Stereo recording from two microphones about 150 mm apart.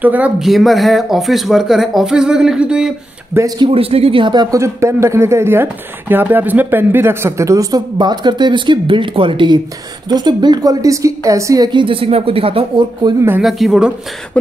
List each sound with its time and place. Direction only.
0.0 s speech: 10° right (ahead or behind)
3.3 s a man's voice: 30° right (ahead or behind)
13.4 s speech: centre (ahead or behind)
14.3 s cough: 10° left (ahead or behind)